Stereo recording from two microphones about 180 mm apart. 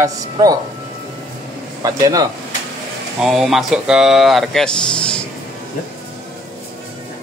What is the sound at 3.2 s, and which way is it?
A man's voice, centre (ahead or behind).